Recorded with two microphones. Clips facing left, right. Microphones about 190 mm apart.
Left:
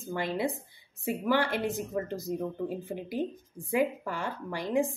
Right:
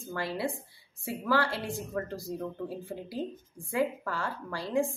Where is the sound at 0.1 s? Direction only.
20° left (ahead or behind).